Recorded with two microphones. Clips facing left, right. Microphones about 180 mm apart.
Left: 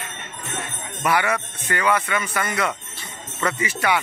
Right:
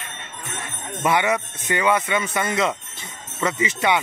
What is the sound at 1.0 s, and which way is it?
Speech, 20° right (ahead or behind).